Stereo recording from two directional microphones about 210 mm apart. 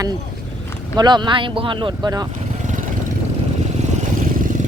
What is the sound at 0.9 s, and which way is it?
A woman's voice, 20° right (ahead or behind).